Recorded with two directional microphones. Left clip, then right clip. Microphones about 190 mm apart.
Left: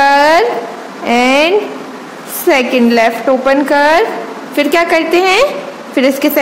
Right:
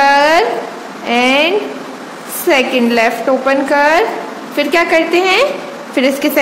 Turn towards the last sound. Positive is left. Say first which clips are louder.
# left 2 dB
turn(degrees=15)  # may be behind; listen again after turning